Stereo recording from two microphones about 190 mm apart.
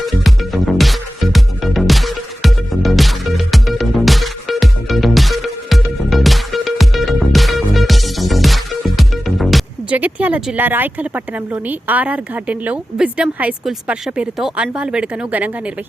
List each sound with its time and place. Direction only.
0.0 s music: centre (ahead or behind)